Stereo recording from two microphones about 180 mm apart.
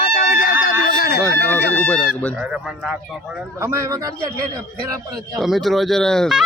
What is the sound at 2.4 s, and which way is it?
Speech, 5° right (ahead or behind).